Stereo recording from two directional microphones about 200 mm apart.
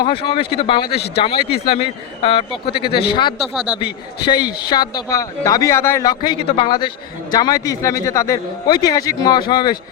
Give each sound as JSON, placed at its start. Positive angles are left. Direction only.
{"t": 0.0, "sound": "speech", "side_deg": 25}